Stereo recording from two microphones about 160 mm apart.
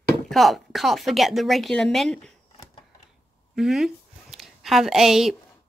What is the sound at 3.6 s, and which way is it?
A woman's voice, centre (ahead or behind).